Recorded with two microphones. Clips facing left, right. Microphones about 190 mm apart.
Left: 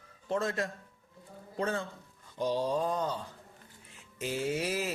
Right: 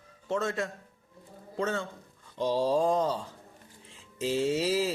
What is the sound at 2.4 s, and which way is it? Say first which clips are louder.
Mantra: right 4 dB; 90° right.